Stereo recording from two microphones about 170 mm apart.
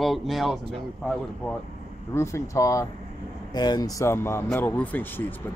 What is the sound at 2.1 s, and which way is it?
Speech, 15° left (ahead or behind).